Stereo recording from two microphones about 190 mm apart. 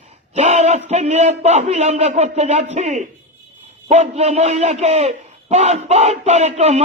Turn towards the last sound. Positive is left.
turn(degrees=-35)  # may be behind; listen again after turning